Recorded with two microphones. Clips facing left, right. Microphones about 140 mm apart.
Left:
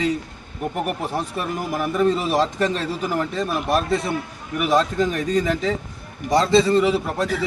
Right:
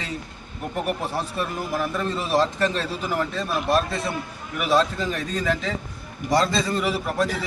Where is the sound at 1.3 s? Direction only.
15° left (ahead or behind).